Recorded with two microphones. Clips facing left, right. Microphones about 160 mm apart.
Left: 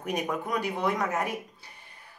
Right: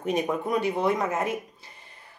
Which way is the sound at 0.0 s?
25° right (ahead or behind).